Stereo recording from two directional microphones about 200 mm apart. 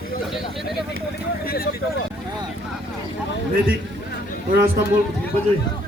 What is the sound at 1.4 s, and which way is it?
Speech, 50° left (ahead or behind).